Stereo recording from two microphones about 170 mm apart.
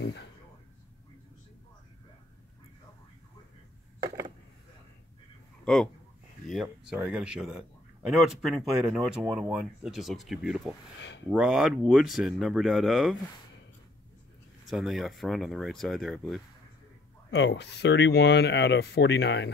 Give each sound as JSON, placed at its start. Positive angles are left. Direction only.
{"t": 0.0, "sound": "a sound", "side_deg": 75}
{"t": 6.4, "sound": "speech", "side_deg": 0}
{"t": 11.0, "sound": "speech", "side_deg": 90}
{"t": 11.3, "sound": "speech", "side_deg": -5}
{"t": 14.7, "sound": "speech", "side_deg": 0}
{"t": 17.3, "sound": "speech", "side_deg": 85}